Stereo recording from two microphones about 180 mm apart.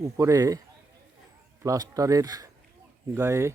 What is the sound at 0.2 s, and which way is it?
Speech, 20° right (ahead or behind).